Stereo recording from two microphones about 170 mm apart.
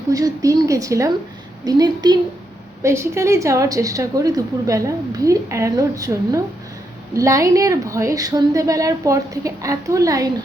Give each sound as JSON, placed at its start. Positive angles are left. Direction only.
{"t": 0.1, "sound": "a woman's voice", "side_deg": -20}